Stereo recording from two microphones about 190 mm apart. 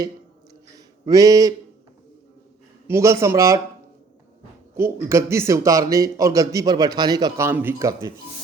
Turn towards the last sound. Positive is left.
turn(degrees=-15)  # may be behind; listen again after turning